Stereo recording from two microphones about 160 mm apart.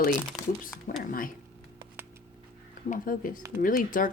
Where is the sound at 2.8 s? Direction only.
60° left (ahead or behind).